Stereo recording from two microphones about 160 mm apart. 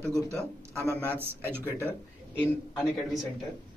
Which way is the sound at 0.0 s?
15° right (ahead or behind).